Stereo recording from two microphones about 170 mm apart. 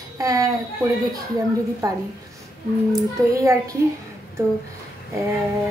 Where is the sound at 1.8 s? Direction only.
20° right (ahead or behind).